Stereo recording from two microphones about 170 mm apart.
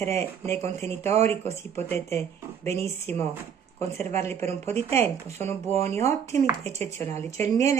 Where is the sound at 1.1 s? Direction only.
40° right (ahead or behind).